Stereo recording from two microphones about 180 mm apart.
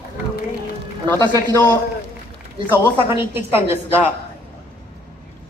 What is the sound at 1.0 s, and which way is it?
Speech, 15° left (ahead or behind).